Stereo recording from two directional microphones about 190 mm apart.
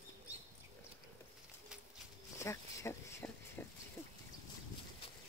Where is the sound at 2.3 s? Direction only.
15° left (ahead or behind).